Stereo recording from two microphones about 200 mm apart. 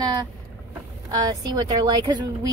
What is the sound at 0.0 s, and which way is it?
Vehicle, 20° right (ahead or behind).